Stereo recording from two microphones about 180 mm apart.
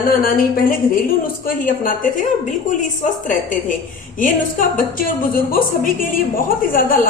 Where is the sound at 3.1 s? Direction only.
45° left (ahead or behind).